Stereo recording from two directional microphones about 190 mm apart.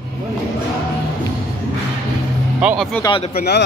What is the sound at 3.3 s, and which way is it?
Speech, 55° left (ahead or behind).